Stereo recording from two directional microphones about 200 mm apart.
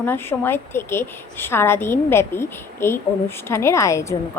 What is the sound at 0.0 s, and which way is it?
A woman's voice, 10° left (ahead or behind).